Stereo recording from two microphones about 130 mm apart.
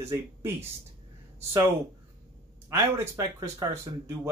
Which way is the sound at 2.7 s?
20° right (ahead or behind).